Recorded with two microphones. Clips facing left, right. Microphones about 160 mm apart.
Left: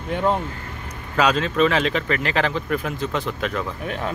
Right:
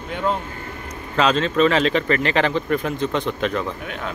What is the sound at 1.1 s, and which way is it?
Speech, 5° left (ahead or behind).